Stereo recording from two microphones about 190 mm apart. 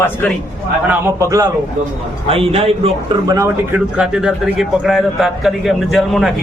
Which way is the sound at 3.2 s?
15° right (ahead or behind).